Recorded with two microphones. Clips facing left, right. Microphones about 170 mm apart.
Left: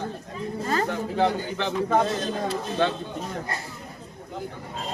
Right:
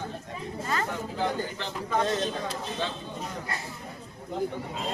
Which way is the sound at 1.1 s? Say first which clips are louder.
Left 7 dB; 65° left (ahead or behind).